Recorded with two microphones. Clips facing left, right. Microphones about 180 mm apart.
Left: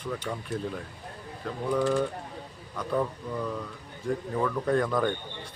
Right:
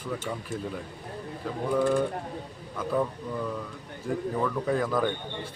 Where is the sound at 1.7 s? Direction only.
5° right (ahead or behind).